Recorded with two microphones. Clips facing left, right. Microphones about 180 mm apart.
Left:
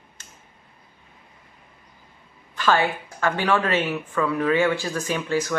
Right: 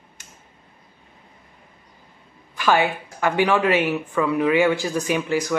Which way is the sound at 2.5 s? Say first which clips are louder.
Right 2 dB; 15° right (ahead or behind).